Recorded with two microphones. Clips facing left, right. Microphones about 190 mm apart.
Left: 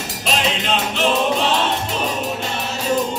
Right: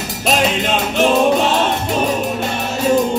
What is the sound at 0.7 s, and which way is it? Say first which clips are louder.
Music: right 3 dB; 50° right (ahead or behind).